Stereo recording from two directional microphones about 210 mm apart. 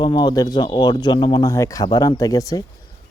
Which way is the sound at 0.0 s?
20° left (ahead or behind).